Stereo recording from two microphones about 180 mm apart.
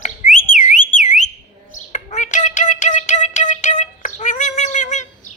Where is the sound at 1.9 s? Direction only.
40° left (ahead or behind).